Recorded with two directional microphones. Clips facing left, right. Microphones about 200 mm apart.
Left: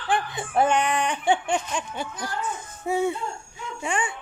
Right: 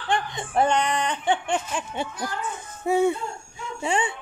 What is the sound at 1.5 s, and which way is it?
Speech, 5° right (ahead or behind).